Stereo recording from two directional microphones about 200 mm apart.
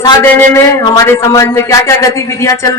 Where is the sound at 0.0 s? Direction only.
10° left (ahead or behind).